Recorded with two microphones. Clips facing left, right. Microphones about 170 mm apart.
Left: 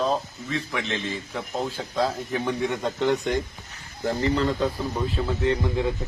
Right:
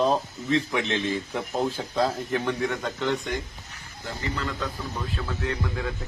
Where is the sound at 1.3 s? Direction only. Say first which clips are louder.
Right 2 dB; 5° right (ahead or behind).